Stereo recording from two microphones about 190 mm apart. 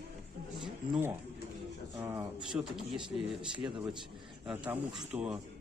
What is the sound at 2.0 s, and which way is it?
Speech, 15° right (ahead or behind).